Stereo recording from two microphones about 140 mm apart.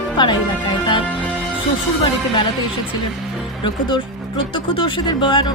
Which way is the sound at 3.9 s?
35° left (ahead or behind).